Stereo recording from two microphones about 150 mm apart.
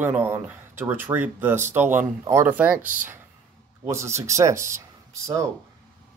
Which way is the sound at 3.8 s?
20° right (ahead or behind).